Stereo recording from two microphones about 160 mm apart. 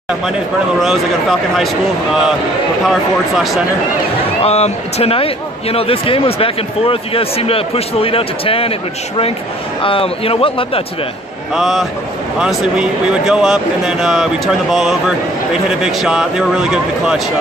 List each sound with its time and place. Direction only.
0.7 s speech: centre (ahead or behind)
2.8 s speech: centre (ahead or behind)
4.4 s speech: 40° left (ahead or behind)
11.5 s speech: centre (ahead or behind)